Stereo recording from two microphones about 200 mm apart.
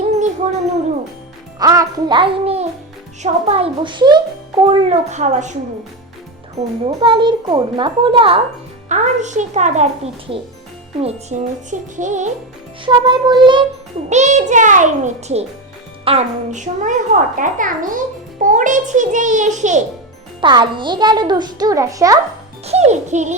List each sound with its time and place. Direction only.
1.5 s a child's voice: 15° right (ahead or behind); by 5.5 s 35° right (ahead or behind)
6.6 s a child's voice: 30° right (ahead or behind)
8.9 s a child's voice: 35° right (ahead or behind)
12.8 s a child's voice: 20° right (ahead or behind)
14.1 s a child's voice: 35° right (ahead or behind)
20.4 s a child's voice: 25° right (ahead or behind)
22.6 s a child's voice: 35° right (ahead or behind)